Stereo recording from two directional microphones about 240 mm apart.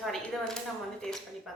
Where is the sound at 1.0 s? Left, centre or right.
Centre.